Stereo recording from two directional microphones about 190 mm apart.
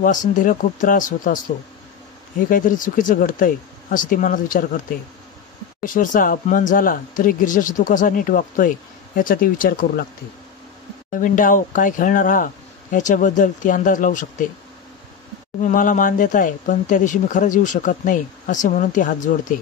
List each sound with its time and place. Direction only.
0.0 s speech: 45° left (ahead or behind)
11.1 s speech: 45° left (ahead or behind)
15.6 s speech: 45° left (ahead or behind)